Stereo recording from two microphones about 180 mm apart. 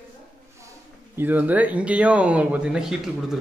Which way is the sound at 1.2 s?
10° right (ahead or behind).